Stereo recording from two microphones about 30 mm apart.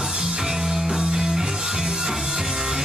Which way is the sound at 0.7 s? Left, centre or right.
Right.